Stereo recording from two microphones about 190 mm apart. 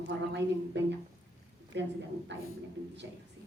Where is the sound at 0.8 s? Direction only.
65° right (ahead or behind).